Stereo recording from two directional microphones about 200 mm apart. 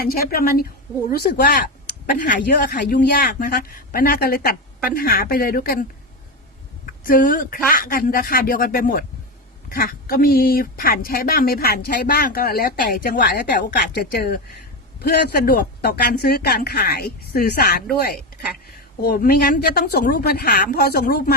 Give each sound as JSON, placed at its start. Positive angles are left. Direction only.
{"t": 0.0, "sound": "speech", "side_deg": 50}
{"t": 7.0, "sound": "speech", "side_deg": 45}
{"t": 19.0, "sound": "speech", "side_deg": 50}